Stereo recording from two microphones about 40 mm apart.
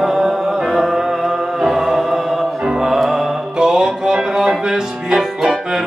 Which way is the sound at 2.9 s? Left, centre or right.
Centre.